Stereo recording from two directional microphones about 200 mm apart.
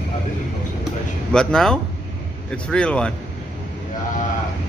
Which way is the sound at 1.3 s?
5° left (ahead or behind).